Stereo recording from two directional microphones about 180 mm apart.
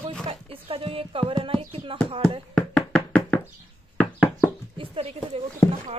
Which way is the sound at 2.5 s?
5° left (ahead or behind).